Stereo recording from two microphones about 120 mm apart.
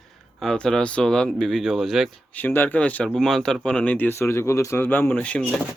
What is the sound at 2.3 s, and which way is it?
Speech, 15° left (ahead or behind).